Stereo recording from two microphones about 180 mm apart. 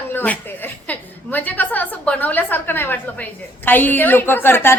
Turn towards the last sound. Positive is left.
turn(degrees=10)  # may be behind; listen again after turning